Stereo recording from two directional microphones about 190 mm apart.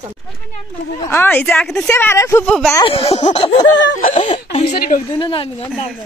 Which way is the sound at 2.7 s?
30° left (ahead or behind).